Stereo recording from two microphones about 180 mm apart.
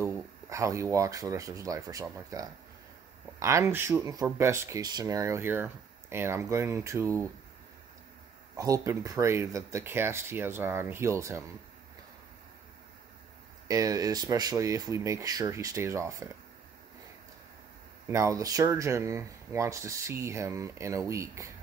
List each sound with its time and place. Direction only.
0.0 s speech: 15° right (ahead or behind)
8.5 s speech: 20° right (ahead or behind)
13.7 s speech: 20° right (ahead or behind)
18.0 s speech: 15° right (ahead or behind)